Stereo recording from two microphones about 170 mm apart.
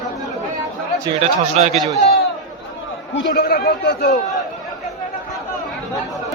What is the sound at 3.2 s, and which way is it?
Speech, 70° left (ahead or behind).